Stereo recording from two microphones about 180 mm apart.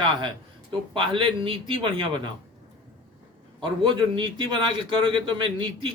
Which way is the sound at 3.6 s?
25° right (ahead or behind).